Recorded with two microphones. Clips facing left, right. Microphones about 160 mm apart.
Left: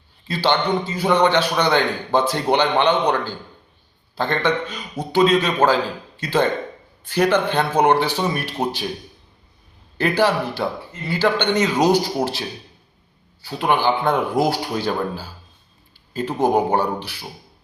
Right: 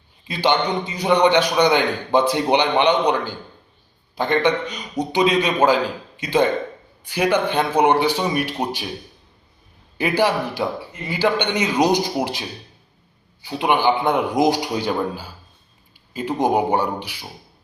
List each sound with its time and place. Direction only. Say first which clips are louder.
0.3 s a man's voice: even; 15° right (ahead or behind)
10.0 s a man's voice: left 1 dB; 10° right (ahead or behind)